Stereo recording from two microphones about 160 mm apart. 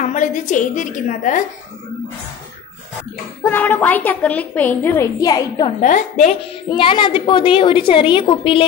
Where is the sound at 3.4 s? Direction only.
10° left (ahead or behind).